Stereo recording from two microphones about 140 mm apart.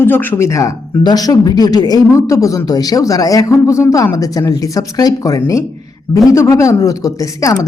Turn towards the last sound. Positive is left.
turn(degrees=25)  # may be behind; listen again after turning